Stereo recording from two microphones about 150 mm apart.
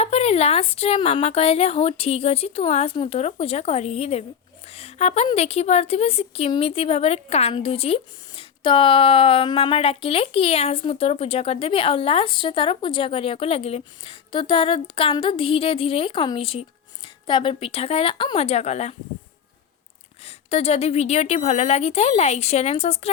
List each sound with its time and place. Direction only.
0.0 s a woman's voice: 45° left (ahead or behind)
20.2 s a woman's voice: 45° left (ahead or behind)